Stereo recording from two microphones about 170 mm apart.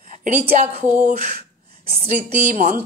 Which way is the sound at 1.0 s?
60° right (ahead or behind).